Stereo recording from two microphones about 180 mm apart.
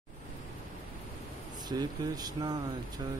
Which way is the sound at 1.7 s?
20° right (ahead or behind).